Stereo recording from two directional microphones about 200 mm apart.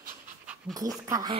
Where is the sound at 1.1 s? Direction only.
15° right (ahead or behind).